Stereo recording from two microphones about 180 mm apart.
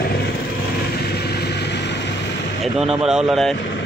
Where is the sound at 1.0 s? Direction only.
60° left (ahead or behind).